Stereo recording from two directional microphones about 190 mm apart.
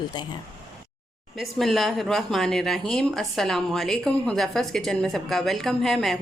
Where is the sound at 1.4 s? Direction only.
Centre (ahead or behind).